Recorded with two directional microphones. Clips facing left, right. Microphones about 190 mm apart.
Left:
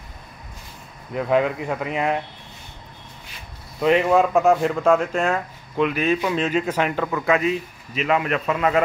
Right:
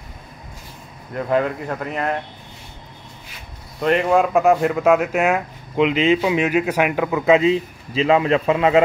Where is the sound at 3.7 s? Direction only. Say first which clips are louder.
Even; 5° left (ahead or behind).